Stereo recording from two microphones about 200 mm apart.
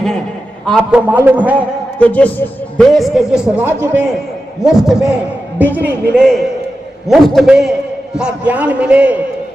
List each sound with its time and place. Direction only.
0.6 s a man's voice: centre (ahead or behind)
2.0 s a man's voice: 5° left (ahead or behind)